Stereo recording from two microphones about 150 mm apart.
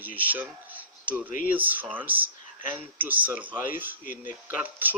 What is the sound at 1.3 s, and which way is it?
Speech, 60° left (ahead or behind).